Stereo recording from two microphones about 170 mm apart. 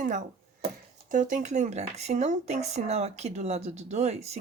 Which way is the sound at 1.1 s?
50° right (ahead or behind).